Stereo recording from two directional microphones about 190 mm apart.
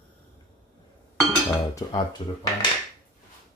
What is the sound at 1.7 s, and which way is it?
Speech, 20° left (ahead or behind).